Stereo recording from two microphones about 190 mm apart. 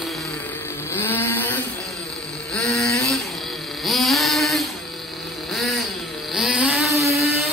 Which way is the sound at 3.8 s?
Centre (ahead or behind).